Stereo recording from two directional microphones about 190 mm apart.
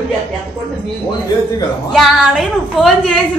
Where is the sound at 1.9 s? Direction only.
Centre (ahead or behind).